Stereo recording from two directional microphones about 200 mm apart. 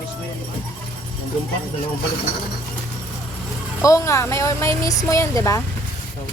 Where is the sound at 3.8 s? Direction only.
15° left (ahead or behind).